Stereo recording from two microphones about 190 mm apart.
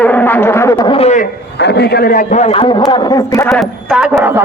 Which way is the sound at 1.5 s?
60° left (ahead or behind).